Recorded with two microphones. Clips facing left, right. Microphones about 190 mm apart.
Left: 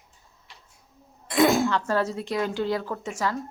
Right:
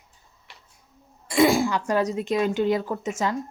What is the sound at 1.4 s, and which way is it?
A woman's voice, 10° right (ahead or behind).